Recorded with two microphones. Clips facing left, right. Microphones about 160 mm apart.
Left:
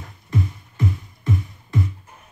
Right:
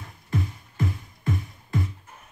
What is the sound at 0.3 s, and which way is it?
Music, 25° left (ahead or behind).